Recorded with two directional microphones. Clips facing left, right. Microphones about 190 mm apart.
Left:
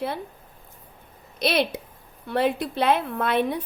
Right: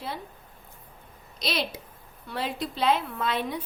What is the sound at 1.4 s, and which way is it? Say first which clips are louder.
A woman's voice: left 8 dB; 60° left (ahead or behind).